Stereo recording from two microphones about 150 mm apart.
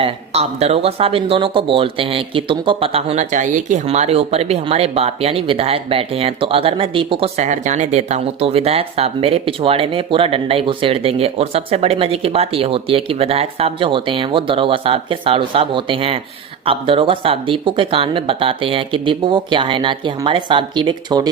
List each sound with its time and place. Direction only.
0.0 s speech: 45° right (ahead or behind)
7.3 s speech: 55° right (ahead or behind); by 21.2 s 30° right (ahead or behind)